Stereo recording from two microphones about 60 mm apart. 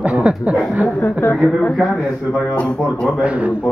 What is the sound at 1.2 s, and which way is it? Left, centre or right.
Speech, left.